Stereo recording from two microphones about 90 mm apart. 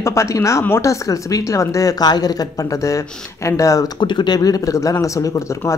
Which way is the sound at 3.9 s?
60° left (ahead or behind).